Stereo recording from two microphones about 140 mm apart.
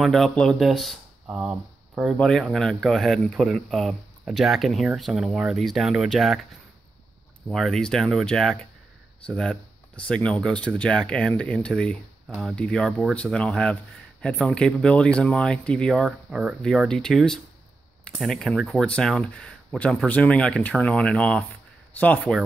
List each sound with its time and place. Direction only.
0.0 s speech: centre (ahead or behind)
7.4 s speech: centre (ahead or behind)